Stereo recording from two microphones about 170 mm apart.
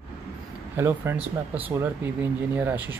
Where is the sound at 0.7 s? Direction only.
15° right (ahead or behind).